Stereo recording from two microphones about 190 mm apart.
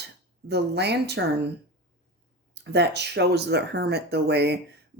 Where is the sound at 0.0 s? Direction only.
60° right (ahead or behind).